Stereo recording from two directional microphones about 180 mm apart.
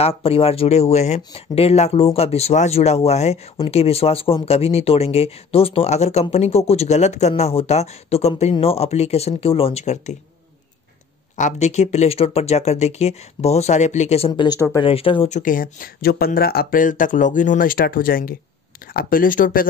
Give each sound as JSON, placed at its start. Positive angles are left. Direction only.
{"t": 0.0, "sound": "speech", "side_deg": 35}
{"t": 11.3, "sound": "speech", "side_deg": 40}
{"t": 14.9, "sound": "speech", "side_deg": 30}